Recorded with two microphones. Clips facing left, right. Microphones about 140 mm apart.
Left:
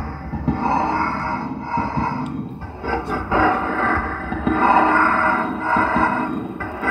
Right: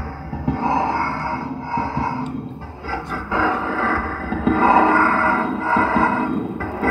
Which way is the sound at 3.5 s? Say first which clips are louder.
Left 1 dB; centre (ahead or behind).